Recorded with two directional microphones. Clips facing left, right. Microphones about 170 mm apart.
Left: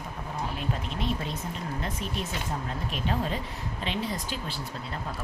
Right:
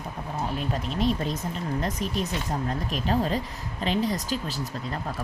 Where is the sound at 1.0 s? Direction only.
40° right (ahead or behind).